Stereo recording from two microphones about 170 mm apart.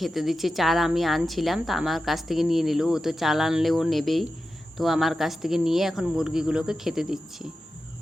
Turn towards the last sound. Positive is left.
turn(degrees=0)  # may be behind; listen again after turning